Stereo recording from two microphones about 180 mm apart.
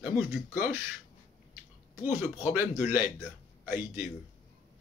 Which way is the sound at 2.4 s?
10° right (ahead or behind).